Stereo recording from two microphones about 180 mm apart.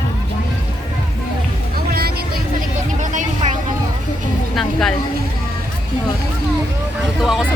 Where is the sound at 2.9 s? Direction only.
45° right (ahead or behind).